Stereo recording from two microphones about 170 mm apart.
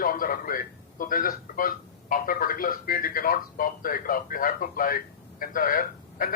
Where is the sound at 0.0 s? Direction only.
55° left (ahead or behind).